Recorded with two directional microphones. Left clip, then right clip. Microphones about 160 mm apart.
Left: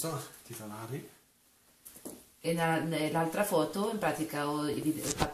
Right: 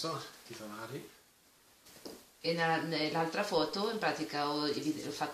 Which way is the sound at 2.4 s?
20° right (ahead or behind).